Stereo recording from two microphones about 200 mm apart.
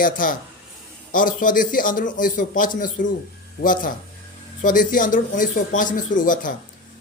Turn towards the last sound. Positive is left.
turn(degrees=40)  # may be behind; listen again after turning